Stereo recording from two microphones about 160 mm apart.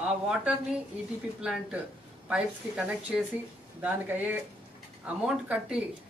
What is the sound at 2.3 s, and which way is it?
A woman's voice, 5° right (ahead or behind).